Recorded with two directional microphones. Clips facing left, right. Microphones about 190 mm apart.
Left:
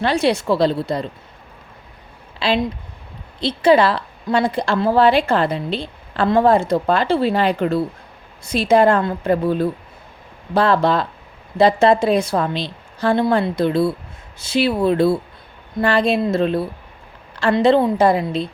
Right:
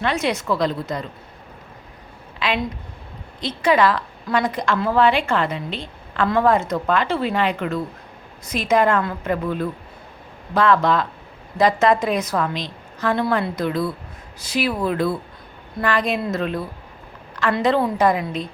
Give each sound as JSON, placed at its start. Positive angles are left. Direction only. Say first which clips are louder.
{"t": 0.0, "sound": "a woman's voice", "louder": "left 5 dB", "side_deg": 35}
{"t": 2.4, "sound": "a woman's voice", "louder": "left 4 dB", "side_deg": 30}